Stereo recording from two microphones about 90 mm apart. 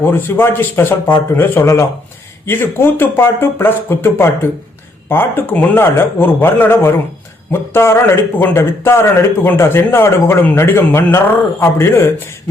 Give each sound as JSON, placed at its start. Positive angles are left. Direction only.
{"t": 0.0, "sound": "a man's voice", "side_deg": 25}